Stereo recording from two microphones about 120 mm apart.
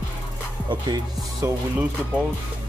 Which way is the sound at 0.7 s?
35° right (ahead or behind).